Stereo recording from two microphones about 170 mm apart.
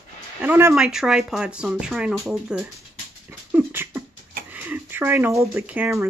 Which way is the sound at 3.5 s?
15° right (ahead or behind).